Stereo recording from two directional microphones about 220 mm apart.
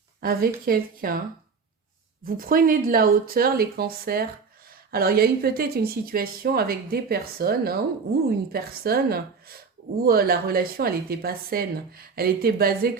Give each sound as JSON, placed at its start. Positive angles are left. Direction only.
{"t": 0.2, "sound": "speech", "side_deg": -45}
{"t": 2.2, "sound": "speech", "side_deg": -40}